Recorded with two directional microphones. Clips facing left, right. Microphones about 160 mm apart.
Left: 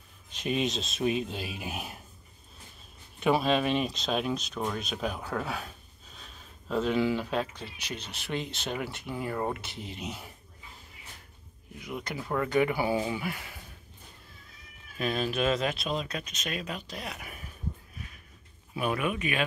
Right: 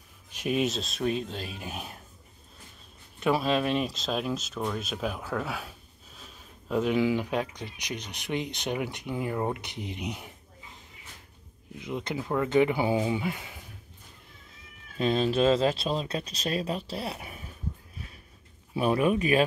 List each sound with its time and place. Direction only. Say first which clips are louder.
0.3 s speech: right 2 dB; 5° right (ahead or behind)
3.2 s speech: even; centre (ahead or behind); by 10.3 s 15° right (ahead or behind)
11.8 s speech: right 4 dB; 25° right (ahead or behind)
15.0 s speech: right 5 dB; 25° right (ahead or behind)
18.8 s speech: right 6 dB; 30° right (ahead or behind)